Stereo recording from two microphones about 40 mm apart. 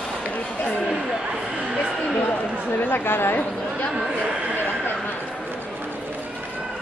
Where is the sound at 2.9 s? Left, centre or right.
Left.